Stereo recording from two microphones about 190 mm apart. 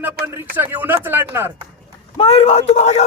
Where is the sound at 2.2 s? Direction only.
30° left (ahead or behind).